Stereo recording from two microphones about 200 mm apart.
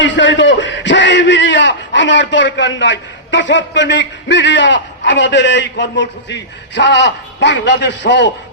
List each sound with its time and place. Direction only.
0.0 s a man's voice: 65° left (ahead or behind)